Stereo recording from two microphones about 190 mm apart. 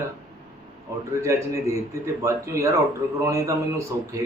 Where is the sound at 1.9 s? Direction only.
15° right (ahead or behind).